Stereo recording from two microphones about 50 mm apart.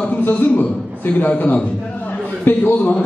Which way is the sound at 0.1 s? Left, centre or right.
Left.